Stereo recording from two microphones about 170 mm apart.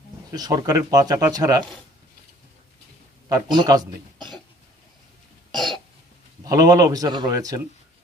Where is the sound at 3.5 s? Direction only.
25° right (ahead or behind).